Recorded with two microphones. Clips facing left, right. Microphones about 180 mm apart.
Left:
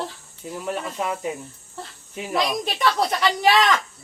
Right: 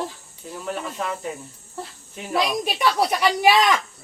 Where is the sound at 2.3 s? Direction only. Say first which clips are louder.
Right 1 dB; 10° right (ahead or behind).